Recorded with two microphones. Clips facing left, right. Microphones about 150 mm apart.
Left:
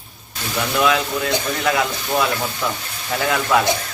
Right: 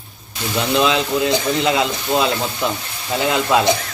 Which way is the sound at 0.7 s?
20° right (ahead or behind).